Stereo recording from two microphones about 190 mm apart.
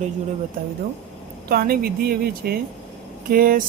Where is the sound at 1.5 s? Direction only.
50° right (ahead or behind).